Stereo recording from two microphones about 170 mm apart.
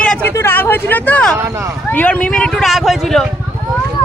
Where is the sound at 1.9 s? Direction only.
10° left (ahead or behind).